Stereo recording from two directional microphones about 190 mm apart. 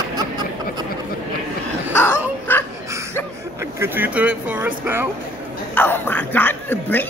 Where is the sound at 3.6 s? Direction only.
10° right (ahead or behind).